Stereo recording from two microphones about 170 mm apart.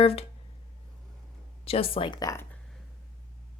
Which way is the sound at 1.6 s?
35° left (ahead or behind).